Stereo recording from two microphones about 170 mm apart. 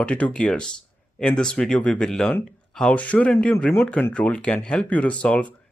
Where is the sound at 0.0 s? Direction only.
5° left (ahead or behind).